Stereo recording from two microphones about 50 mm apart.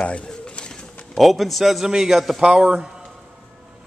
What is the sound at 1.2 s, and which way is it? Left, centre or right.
Speech, centre.